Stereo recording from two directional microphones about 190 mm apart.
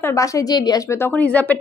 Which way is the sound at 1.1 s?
5° left (ahead or behind).